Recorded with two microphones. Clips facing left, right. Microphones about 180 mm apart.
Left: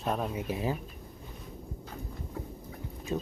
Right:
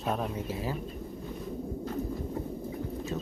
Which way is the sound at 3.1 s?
15° left (ahead or behind).